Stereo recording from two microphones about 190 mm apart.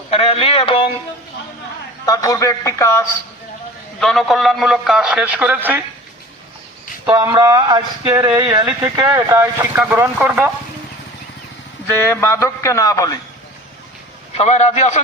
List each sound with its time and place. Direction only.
0.1 s speech: 30° left (ahead or behind)
2.0 s a man's voice: 20° left (ahead or behind)
4.0 s a man's voice: centre (ahead or behind)
7.0 s speech: 20° right (ahead or behind)
12.1 s a man's voice: 15° left (ahead or behind)
14.3 s a man's voice: 35° left (ahead or behind)